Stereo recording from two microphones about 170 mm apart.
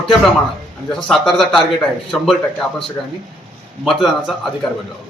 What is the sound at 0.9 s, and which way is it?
Speech, 5° left (ahead or behind).